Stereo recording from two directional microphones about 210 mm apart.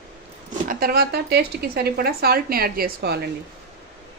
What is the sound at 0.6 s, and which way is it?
Speech, 45° right (ahead or behind).